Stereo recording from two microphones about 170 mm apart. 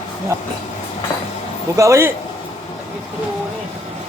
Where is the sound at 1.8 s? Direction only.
15° right (ahead or behind).